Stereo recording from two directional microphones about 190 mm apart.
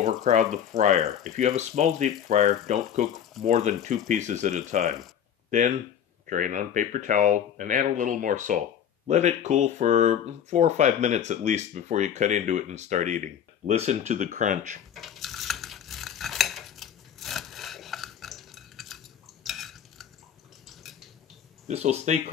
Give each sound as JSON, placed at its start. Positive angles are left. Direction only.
{"t": 0.0, "sound": "speech", "side_deg": -35}
{"t": 6.2, "sound": "speech", "side_deg": -45}
{"t": 15.0, "sound": "cutlery", "side_deg": 0}
{"t": 20.6, "sound": "dishes", "side_deg": 0}
{"t": 21.6, "sound": "speech", "side_deg": -35}